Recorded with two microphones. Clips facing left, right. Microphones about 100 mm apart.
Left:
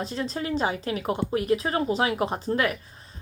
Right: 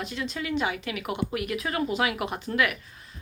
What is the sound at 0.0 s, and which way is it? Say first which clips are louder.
Speech: left 3 dB; 35° left (ahead or behind).